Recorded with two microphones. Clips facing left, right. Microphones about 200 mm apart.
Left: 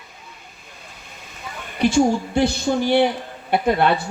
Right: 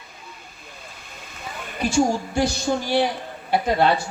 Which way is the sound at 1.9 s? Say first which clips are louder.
Left 2 dB; 60° left (ahead or behind).